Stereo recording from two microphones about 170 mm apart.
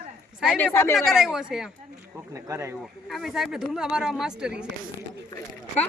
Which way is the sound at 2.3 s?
20° right (ahead or behind).